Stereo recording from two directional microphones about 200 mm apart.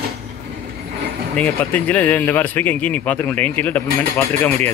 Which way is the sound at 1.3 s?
10° left (ahead or behind).